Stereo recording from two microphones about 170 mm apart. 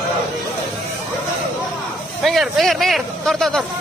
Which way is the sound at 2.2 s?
Centre (ahead or behind).